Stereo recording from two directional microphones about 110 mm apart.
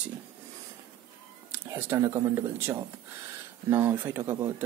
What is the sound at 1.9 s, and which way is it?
Speech, 25° right (ahead or behind).